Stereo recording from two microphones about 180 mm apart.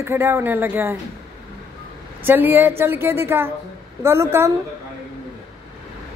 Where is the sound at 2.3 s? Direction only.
10° right (ahead or behind).